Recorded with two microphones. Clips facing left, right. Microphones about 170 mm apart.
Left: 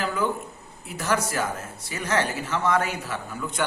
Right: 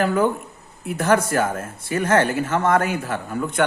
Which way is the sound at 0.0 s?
55° right (ahead or behind).